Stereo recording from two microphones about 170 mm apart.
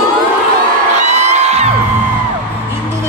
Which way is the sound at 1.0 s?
40° right (ahead or behind).